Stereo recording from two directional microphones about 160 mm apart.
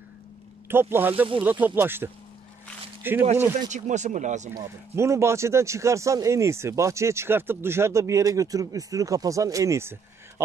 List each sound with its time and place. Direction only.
0.7 s speech: 15° right (ahead or behind)
3.7 s speech: 50° right (ahead or behind)
4.6 s speech: 15° right (ahead or behind)